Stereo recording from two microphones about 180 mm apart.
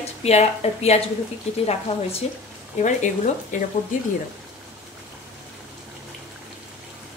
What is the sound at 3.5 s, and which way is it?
Speech, 45° left (ahead or behind).